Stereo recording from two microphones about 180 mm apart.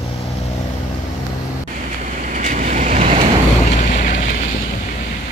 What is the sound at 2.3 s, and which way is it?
Vehicle, 45° right (ahead or behind).